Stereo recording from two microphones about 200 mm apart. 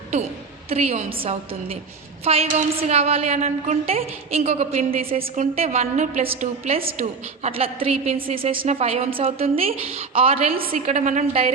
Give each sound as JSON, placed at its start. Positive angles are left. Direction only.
{"t": 0.7, "sound": "a woman's voice", "side_deg": -30}